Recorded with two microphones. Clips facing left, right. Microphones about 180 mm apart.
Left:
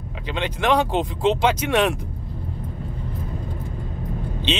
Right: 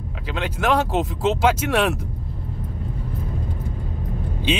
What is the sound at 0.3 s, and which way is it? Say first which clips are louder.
Speech: left 1 dB; 5° right (ahead or behind).